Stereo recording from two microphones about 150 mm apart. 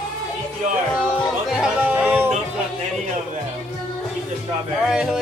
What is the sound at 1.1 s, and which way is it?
Music, 5° left (ahead or behind).